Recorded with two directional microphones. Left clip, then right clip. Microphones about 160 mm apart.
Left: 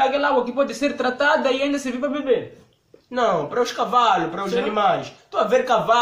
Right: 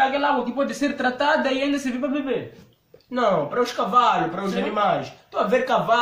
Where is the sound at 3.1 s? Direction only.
20° left (ahead or behind).